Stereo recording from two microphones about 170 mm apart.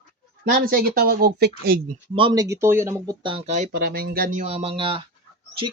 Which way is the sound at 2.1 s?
25° right (ahead or behind).